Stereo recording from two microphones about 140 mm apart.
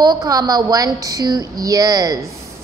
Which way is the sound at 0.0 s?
25° right (ahead or behind).